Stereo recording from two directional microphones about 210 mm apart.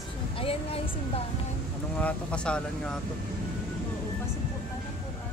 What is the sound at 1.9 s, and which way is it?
Speech, 5° left (ahead or behind).